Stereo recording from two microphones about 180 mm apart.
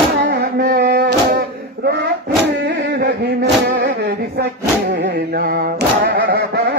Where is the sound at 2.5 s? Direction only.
75° right (ahead or behind).